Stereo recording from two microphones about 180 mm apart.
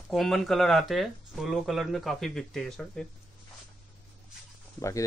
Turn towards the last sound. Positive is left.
turn(degrees=15)  # may be behind; listen again after turning